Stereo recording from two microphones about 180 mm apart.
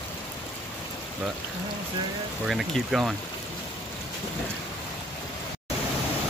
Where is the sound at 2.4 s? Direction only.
Centre (ahead or behind).